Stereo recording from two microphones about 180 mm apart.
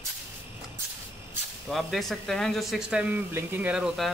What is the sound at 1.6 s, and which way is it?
Speech, centre (ahead or behind).